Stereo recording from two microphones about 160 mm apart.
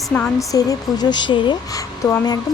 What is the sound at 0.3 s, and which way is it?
Speech, 20° left (ahead or behind).